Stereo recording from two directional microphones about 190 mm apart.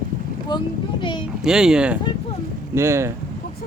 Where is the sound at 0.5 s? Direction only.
25° left (ahead or behind).